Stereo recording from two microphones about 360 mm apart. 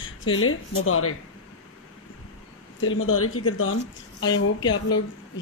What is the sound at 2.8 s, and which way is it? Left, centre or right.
Speech, left.